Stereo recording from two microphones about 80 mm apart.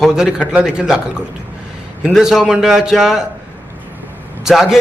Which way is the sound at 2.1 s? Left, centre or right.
Centre.